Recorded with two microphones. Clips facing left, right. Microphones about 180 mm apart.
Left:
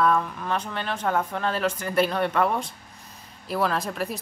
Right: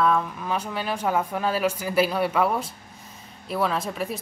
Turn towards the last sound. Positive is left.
turn(degrees=0)  # may be behind; listen again after turning